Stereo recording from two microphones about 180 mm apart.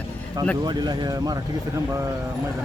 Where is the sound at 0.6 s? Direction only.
25° right (ahead or behind).